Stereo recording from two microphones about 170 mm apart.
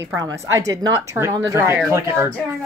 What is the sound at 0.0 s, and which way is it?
Speech, 20° right (ahead or behind).